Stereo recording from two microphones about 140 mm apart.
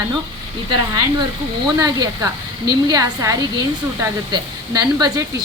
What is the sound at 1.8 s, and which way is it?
A woman's voice, 25° right (ahead or behind).